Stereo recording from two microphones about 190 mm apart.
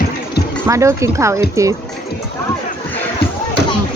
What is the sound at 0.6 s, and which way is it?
Speech, 15° right (ahead or behind).